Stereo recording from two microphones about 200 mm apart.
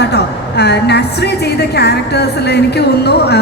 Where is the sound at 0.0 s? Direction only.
55° left (ahead or behind).